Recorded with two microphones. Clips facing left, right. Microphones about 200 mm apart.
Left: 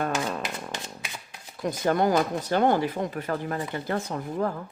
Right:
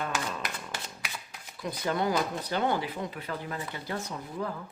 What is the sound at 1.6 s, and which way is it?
Speech, 50° left (ahead or behind).